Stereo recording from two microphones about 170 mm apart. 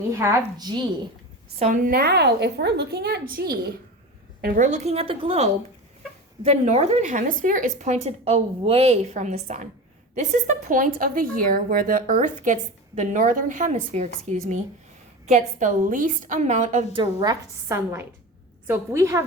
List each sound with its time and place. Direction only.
0.1 s a woman's voice: 15° right (ahead or behind)
1.5 s a woman's voice: 45° right (ahead or behind); by 4.6 s 65° right (ahead or behind)
4.6 s a woman's voice: 40° right (ahead or behind)
16.9 s a woman's voice: 25° right (ahead or behind)